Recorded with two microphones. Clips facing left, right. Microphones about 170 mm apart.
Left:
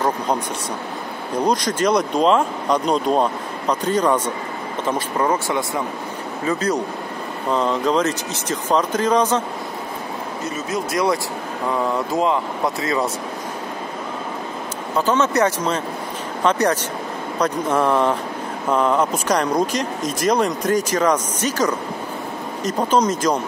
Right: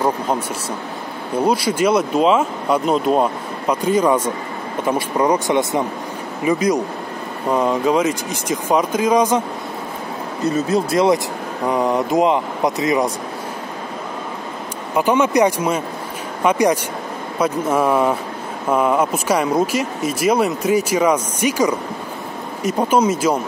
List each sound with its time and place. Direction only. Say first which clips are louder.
1.4 s speech: right 2 dB; 10° right (ahead or behind)
10.5 s speech: right 7 dB; 30° right (ahead or behind)
15.0 s speech: right 3 dB; 15° right (ahead or behind)